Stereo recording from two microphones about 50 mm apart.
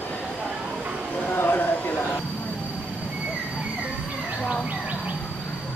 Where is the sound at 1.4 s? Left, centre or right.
Left.